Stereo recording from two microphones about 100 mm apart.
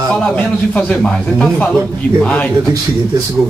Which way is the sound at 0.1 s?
10° left (ahead or behind).